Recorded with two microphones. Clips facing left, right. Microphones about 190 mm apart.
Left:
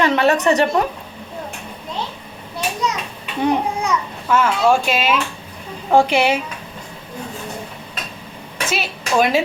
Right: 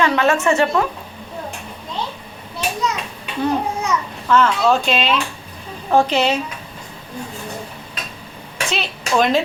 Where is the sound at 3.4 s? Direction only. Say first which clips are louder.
Left 1 dB; 15° left (ahead or behind).